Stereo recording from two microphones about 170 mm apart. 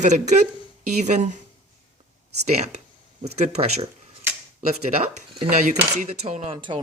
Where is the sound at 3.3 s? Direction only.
40° right (ahead or behind).